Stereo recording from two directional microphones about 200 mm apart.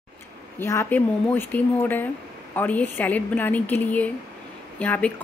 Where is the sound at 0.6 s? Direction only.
10° left (ahead or behind).